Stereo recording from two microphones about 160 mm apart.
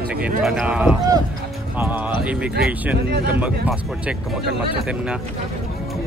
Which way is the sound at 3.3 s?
10° right (ahead or behind).